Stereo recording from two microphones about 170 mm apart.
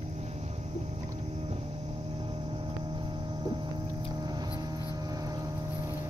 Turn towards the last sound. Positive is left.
turn(degrees=-20)  # may be behind; listen again after turning